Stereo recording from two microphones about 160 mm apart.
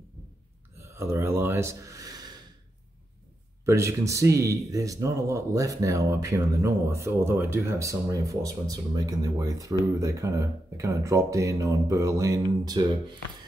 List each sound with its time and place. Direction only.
0.7 s speech: 15° right (ahead or behind)
3.6 s speech: 20° right (ahead or behind)